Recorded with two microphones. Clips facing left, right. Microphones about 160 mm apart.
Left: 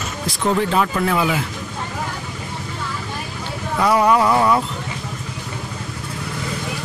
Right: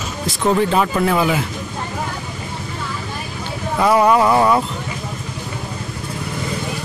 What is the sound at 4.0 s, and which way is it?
Speech, 10° right (ahead or behind).